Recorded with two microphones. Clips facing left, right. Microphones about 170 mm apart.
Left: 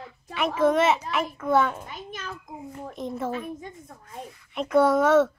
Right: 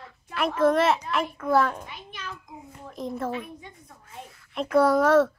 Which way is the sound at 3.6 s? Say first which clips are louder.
Left 6 dB; 50° left (ahead or behind).